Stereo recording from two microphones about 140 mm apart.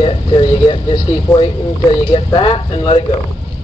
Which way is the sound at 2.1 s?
40° left (ahead or behind).